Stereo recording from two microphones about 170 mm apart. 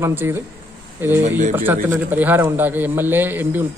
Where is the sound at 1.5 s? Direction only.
10° right (ahead or behind).